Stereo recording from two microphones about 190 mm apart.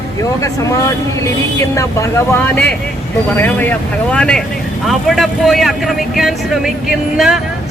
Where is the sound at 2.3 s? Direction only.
10° left (ahead or behind).